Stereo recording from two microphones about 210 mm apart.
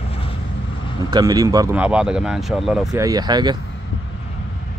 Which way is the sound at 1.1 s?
15° right (ahead or behind).